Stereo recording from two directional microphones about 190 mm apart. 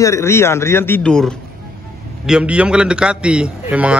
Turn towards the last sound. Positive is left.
turn(degrees=-5)  # may be behind; listen again after turning